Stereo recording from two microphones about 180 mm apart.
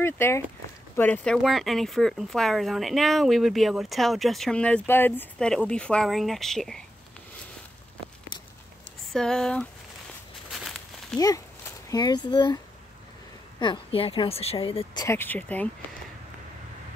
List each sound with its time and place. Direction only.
0.0 s speech: 15° left (ahead or behind)
9.1 s speech: 5° left (ahead or behind)
10.5 s a sound: centre (ahead or behind)
11.1 s speech: 20° left (ahead or behind)
13.6 s a woman's voice: 30° left (ahead or behind)
15.0 s speech: 10° left (ahead or behind)